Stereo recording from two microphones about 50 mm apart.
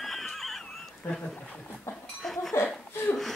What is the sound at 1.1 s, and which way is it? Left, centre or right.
Speech, centre.